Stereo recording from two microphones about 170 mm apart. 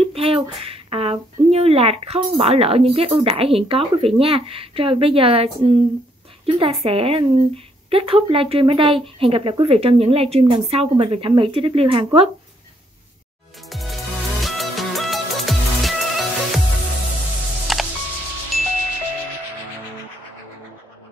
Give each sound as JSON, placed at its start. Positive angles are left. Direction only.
{"t": 0.1, "sound": "speech", "side_deg": -35}
{"t": 13.7, "sound": "music", "side_deg": 0}
{"t": 17.7, "sound": "music", "side_deg": 0}